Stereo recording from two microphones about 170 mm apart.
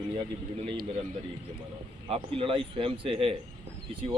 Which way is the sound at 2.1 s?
30° right (ahead or behind).